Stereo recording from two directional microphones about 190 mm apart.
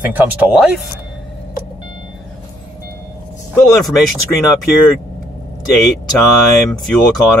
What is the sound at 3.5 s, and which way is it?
Speech, centre (ahead or behind).